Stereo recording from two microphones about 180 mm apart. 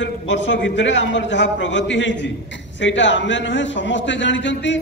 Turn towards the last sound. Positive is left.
turn(degrees=90)